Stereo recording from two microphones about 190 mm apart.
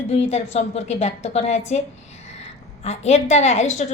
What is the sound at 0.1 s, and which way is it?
A woman's voice, 35° left (ahead or behind).